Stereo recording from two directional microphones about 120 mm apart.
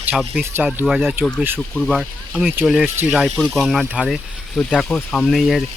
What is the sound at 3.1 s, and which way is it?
Speech, 5° left (ahead or behind).